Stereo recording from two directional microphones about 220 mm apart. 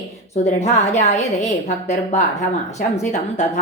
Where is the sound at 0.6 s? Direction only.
30° left (ahead or behind).